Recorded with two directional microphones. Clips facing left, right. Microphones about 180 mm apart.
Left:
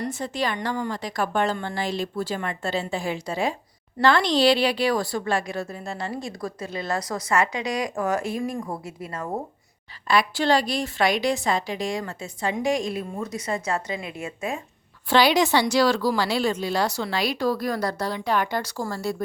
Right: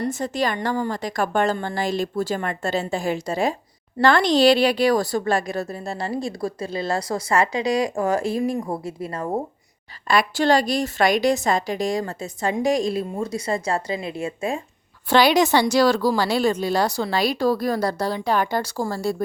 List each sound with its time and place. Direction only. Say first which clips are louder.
0.0 s a woman's voice: right 4 dB; 45° right (ahead or behind)
10.1 s a woman's voice: right 2 dB; 45° right (ahead or behind)
15.1 s a woman's voice: right 2 dB; 45° right (ahead or behind)